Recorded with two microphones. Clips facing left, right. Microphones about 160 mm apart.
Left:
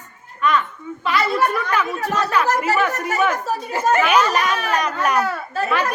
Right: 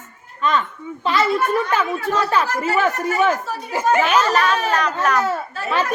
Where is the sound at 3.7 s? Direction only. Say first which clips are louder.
Right 1 dB; 15° right (ahead or behind).